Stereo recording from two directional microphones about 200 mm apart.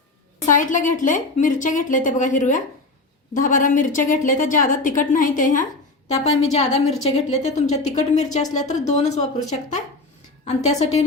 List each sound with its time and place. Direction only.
0.5 s a woman's voice: 40° left (ahead or behind)
10.4 s a woman's voice: 35° left (ahead or behind)